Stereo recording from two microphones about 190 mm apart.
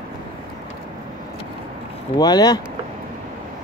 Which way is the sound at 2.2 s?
20° left (ahead or behind).